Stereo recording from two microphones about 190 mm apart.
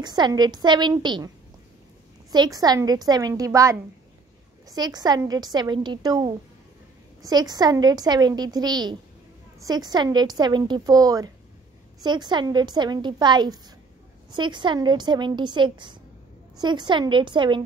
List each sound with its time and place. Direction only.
0.0 s a woman's voice: 20° right (ahead or behind)
2.3 s a woman's voice: 20° right (ahead or behind)